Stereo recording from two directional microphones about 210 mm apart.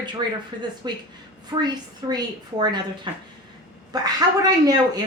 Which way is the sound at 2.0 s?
15° right (ahead or behind).